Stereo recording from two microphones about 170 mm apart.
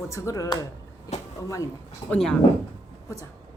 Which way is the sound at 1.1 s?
40° left (ahead or behind).